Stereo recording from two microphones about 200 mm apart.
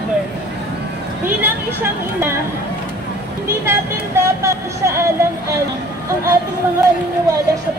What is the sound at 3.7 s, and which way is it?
Vehicle, 15° right (ahead or behind).